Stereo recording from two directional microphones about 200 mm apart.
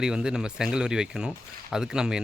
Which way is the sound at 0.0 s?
5° right (ahead or behind).